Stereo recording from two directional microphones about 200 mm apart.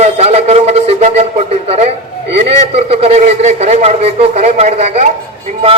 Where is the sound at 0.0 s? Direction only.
30° right (ahead or behind).